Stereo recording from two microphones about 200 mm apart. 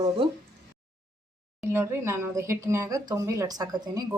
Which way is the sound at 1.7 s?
10° right (ahead or behind).